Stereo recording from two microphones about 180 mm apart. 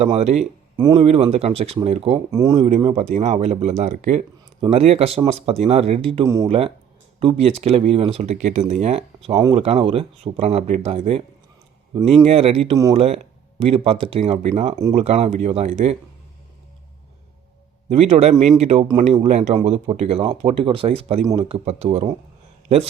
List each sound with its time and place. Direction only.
0.0 s speech: 35° right (ahead or behind)
0.8 s speech: 25° right (ahead or behind)
1.0 s speech: 35° right (ahead or behind)
2.3 s speech: 20° right (ahead or behind)
2.6 s speech: 35° right (ahead or behind)
6.2 s speech: 15° right (ahead or behind)
6.5 s speech: 30° right (ahead or behind)
12.2 s speech: 35° right (ahead or behind)
17.8 s speech: 35° right (ahead or behind)